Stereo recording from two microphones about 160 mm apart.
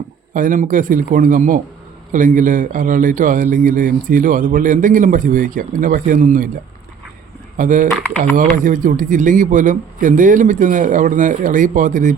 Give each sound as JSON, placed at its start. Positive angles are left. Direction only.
{"t": 0.3, "sound": "a man's voice", "side_deg": -55}
{"t": 7.5, "sound": "a man's voice", "side_deg": -55}